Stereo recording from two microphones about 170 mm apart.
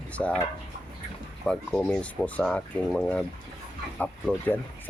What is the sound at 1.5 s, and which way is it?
Speech, 5° left (ahead or behind).